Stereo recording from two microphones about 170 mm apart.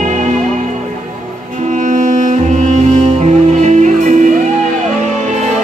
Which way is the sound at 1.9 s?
45° right (ahead or behind).